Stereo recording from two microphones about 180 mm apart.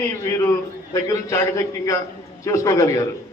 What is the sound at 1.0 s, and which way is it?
A man's voice, 15° left (ahead or behind).